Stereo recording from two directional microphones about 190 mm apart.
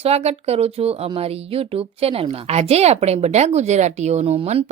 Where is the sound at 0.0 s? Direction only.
35° right (ahead or behind).